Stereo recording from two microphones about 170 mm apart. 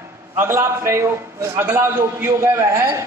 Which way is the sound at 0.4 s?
15° right (ahead or behind).